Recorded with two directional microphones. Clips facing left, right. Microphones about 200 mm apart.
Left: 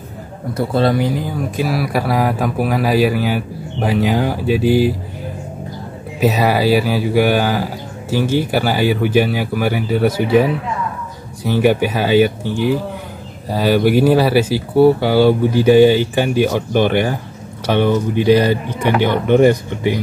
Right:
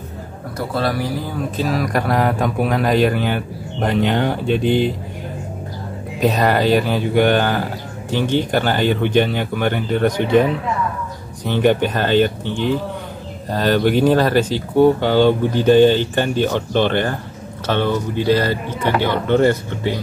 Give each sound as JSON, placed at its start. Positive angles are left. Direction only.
{"t": 0.6, "sound": "speech", "side_deg": 25}
{"t": 6.1, "sound": "speech", "side_deg": 5}